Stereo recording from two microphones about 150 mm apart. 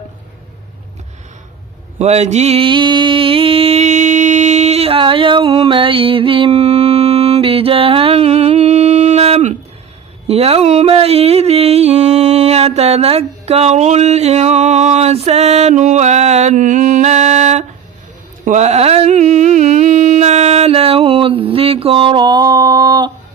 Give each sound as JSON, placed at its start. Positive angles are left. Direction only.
{"t": 2.0, "sound": "music", "side_deg": -45}
{"t": 18.4, "sound": "mantra", "side_deg": -50}